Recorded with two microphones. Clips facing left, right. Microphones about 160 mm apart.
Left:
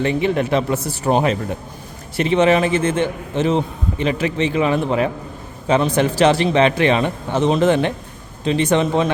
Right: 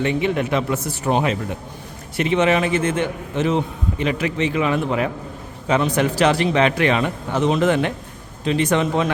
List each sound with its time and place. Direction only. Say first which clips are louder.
0.0 s a man's voice: left 2 dB; 35° left (ahead or behind)